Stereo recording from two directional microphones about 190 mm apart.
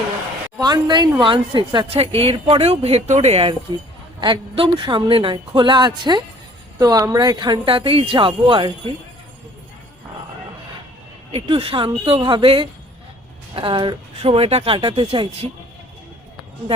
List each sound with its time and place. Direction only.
0.6 s speech: 20° right (ahead or behind)
11.3 s speech: 30° right (ahead or behind)